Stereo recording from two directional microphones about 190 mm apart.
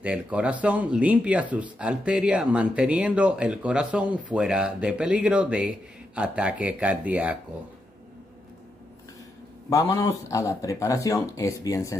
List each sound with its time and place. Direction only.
0.0 s speech: 5° right (ahead or behind)
9.7 s speech: 15° left (ahead or behind)